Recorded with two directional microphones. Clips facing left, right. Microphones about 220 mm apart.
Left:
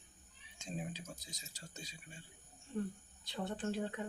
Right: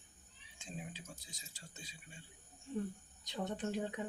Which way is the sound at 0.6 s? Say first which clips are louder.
Left 4 dB; 40° left (ahead or behind).